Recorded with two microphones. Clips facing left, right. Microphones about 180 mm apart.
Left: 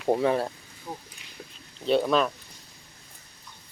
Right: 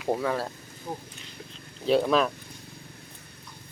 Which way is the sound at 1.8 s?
Centre (ahead or behind).